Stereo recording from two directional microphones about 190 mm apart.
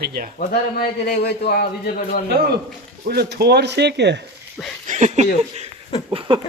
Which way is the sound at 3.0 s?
55° right (ahead or behind).